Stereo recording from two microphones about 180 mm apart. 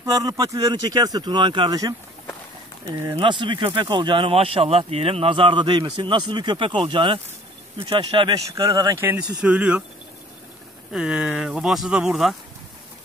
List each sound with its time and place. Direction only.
0.0 s speech: 20° right (ahead or behind)
10.9 s speech: 5° right (ahead or behind)